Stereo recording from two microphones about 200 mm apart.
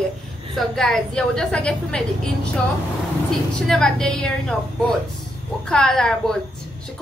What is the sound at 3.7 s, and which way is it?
A woman's voice, 5° left (ahead or behind).